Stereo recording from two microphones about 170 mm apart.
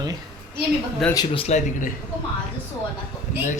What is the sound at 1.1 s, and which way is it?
Speech, 25° left (ahead or behind).